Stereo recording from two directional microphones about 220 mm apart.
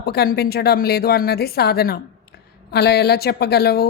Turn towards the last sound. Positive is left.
turn(degrees=45)  # may be behind; listen again after turning